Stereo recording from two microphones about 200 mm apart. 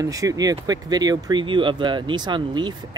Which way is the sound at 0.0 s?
15° right (ahead or behind).